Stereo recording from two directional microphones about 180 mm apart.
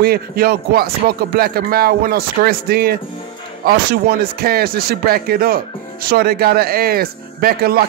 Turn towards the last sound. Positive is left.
turn(degrees=-55)  # may be behind; listen again after turning